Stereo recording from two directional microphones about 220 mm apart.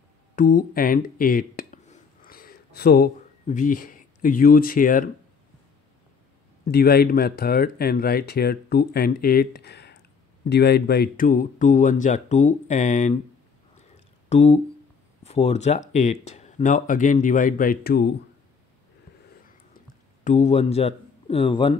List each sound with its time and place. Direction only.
0.4 s speech: 40° left (ahead or behind)
6.6 s speech: 45° left (ahead or behind)
13.7 s a sound: 30° left (ahead or behind)
15.2 s speech: 30° left (ahead or behind); by 18.1 s 45° left (ahead or behind)
20.2 s speech: 30° left (ahead or behind)